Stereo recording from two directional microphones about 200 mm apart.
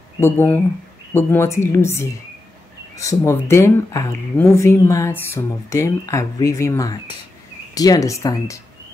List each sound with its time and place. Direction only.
0.2 s speech: 10° left (ahead or behind)